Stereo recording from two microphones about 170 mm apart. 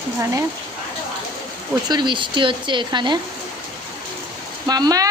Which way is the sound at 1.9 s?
25° right (ahead or behind).